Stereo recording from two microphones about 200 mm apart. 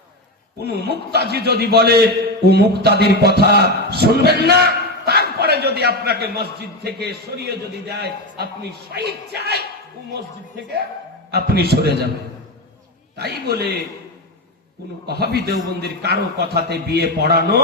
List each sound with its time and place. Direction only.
0.6 s a man's voice: 55° right (ahead or behind)
2.9 s music: 55° left (ahead or behind)
3.2 s a man's voice: 55° right (ahead or behind)
11.3 s a man's voice: 55° right (ahead or behind)
13.1 s a man's voice: 55° right (ahead or behind)
15.0 s a man's voice: 55° right (ahead or behind)